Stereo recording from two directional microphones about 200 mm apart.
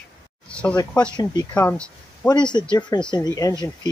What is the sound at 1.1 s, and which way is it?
Speech, 20° left (ahead or behind).